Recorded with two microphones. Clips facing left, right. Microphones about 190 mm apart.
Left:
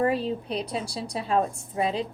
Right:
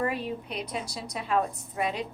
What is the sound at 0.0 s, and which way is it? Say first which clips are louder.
A woman's voice: left 5 dB; 30° left (ahead or behind).